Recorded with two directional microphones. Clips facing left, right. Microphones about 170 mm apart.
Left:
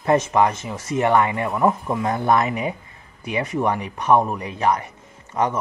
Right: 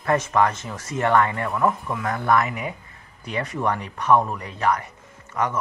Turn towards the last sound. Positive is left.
turn(degrees=20)  # may be behind; listen again after turning